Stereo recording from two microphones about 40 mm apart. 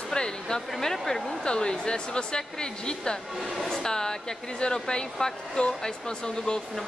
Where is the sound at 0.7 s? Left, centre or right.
Centre.